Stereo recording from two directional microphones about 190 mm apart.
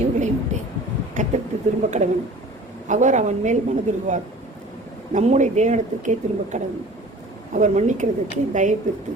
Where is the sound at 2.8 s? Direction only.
40° right (ahead or behind).